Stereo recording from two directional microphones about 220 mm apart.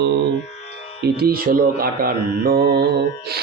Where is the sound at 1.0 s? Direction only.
45° right (ahead or behind).